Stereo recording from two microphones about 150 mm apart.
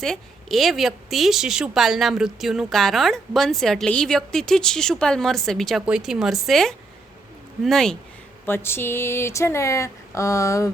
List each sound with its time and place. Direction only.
0.0 s a woman's voice: centre (ahead or behind)
8.4 s speech: 15° left (ahead or behind)